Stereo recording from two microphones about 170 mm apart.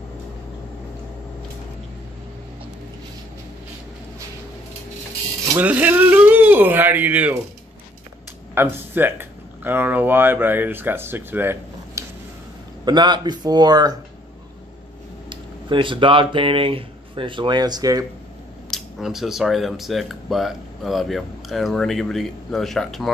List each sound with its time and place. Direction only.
5.6 s speech: 10° right (ahead or behind)
8.5 s speech: 10° right (ahead or behind)
12.8 s speech: 25° right (ahead or behind)
15.2 s speech: 30° right (ahead or behind)
18.7 s speech: centre (ahead or behind)